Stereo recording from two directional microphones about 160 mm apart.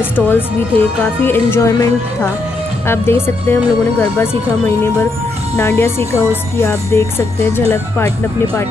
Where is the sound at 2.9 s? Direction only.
15° left (ahead or behind).